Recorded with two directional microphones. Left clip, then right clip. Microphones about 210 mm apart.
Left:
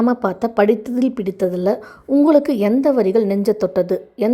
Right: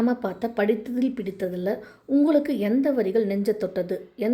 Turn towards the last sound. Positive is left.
turn(degrees=25)  # may be behind; listen again after turning